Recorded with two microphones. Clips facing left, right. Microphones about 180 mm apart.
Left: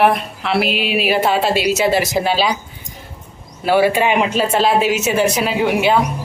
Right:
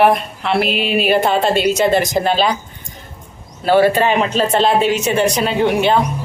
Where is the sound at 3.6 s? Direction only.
10° left (ahead or behind).